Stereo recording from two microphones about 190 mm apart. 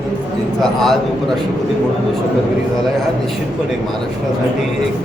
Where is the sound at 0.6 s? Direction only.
Centre (ahead or behind).